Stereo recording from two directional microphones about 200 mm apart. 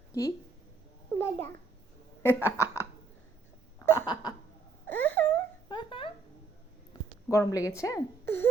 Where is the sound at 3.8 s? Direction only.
15° left (ahead or behind).